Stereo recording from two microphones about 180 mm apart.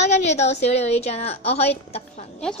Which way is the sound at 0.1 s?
40° left (ahead or behind).